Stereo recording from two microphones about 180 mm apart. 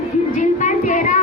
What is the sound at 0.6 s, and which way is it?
Child singing, 45° left (ahead or behind).